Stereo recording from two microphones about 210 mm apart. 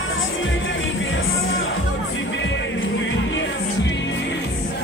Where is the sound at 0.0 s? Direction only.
70° left (ahead or behind).